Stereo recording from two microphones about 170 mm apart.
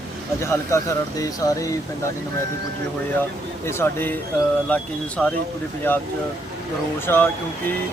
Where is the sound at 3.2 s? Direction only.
15° left (ahead or behind).